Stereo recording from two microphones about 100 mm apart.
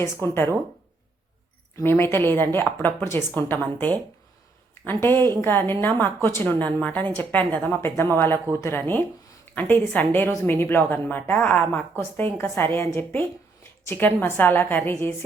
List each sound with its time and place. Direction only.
0.0 s a woman's voice: 25° left (ahead or behind)
1.7 s a woman's voice: 25° left (ahead or behind)